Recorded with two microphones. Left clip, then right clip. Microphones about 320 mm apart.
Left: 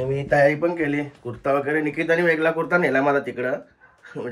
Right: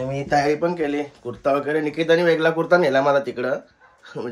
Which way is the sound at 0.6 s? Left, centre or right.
Centre.